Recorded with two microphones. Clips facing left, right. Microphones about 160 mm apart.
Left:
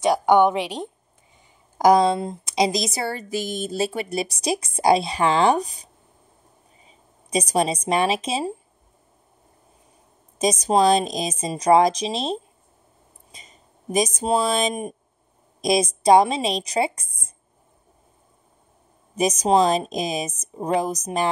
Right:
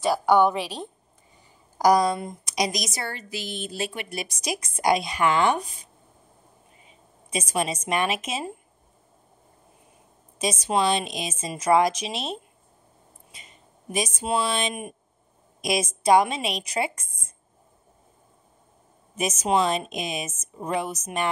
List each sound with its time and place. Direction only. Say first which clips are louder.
0.0 s a woman's voice: left 3 dB; 20° left (ahead or behind)
3.2 s a woman's voice: left 7 dB; 45° left (ahead or behind)
6.9 s speech: left 6 dB; 35° left (ahead or behind)
10.4 s a woman's voice: left 6 dB; 40° left (ahead or behind)
19.1 s a woman's voice: left 5 dB; 35° left (ahead or behind)